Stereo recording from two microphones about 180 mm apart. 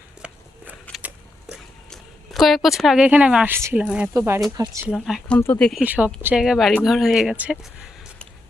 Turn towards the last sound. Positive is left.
turn(degrees=-5)  # may be behind; listen again after turning